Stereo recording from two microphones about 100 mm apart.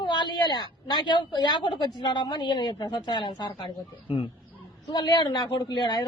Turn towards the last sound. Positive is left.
turn(degrees=45)  # may be behind; listen again after turning